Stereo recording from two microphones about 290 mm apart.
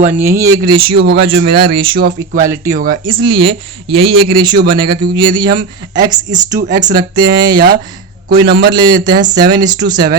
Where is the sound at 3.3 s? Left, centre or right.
Centre.